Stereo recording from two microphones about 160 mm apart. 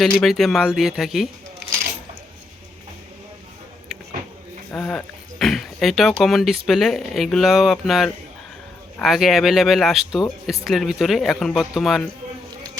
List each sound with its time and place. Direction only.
0.0 s speech: centre (ahead or behind)
4.7 s speech: 5° left (ahead or behind)